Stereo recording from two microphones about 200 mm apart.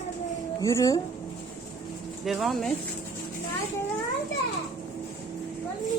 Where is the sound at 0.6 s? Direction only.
15° left (ahead or behind).